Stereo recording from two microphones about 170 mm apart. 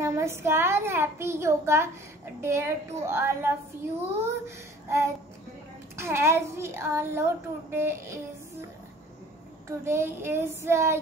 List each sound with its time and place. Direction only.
0.0 s a child's voice: 15° right (ahead or behind)
9.8 s a child's voice: 15° right (ahead or behind)